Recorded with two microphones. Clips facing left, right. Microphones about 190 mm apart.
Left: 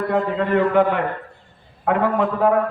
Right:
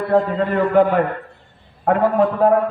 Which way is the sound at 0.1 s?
40° right (ahead or behind).